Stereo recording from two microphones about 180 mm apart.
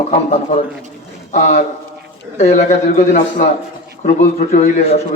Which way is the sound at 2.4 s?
40° left (ahead or behind).